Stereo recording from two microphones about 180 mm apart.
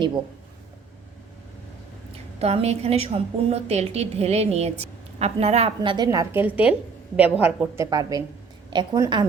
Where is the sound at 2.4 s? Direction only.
35° right (ahead or behind); by 6.8 s 10° right (ahead or behind).